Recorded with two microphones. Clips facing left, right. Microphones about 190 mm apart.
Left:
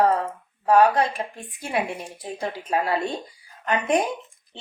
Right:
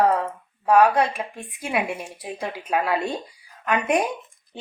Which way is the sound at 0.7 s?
30° left (ahead or behind).